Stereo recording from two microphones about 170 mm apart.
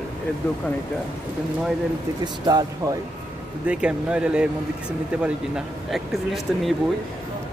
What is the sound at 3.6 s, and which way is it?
Speech, 5° right (ahead or behind).